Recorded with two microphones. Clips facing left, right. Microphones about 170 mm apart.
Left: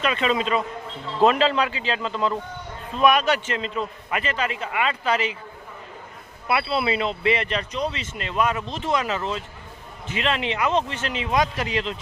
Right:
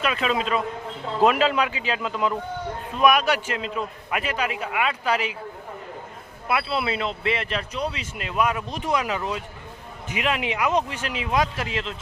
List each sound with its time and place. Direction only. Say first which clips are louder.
0.0 s a man's voice: left 1 dB; 5° right (ahead or behind)
6.5 s speech: left 2 dB; centre (ahead or behind)